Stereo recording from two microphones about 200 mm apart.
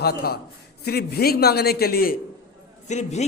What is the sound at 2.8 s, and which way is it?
Speech, 35° left (ahead or behind).